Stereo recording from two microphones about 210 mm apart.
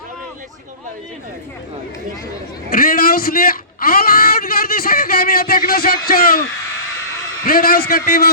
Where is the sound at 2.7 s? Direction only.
45° left (ahead or behind).